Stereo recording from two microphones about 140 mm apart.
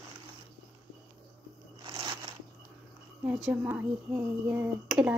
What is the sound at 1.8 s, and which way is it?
Crunch, 40° right (ahead or behind).